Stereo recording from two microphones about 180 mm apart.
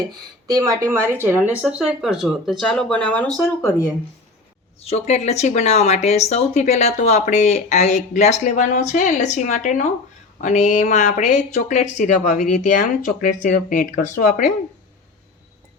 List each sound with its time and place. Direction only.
0.0 s speech: 20° right (ahead or behind); by 3.8 s 15° left (ahead or behind)
4.8 s speech: 35° left (ahead or behind)